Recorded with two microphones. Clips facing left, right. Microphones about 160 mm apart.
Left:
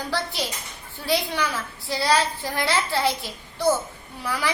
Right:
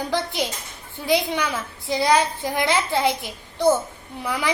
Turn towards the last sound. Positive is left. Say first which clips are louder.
# right 2 dB
turn(degrees=-15)  # may be behind; listen again after turning